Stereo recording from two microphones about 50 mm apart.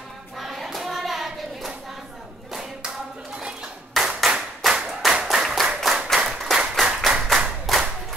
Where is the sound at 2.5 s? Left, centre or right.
Centre.